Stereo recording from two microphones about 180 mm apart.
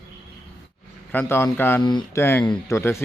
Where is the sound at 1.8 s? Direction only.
25° left (ahead or behind).